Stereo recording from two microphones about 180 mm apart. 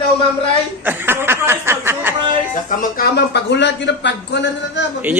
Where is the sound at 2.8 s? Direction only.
60° left (ahead or behind); by 4.8 s 80° left.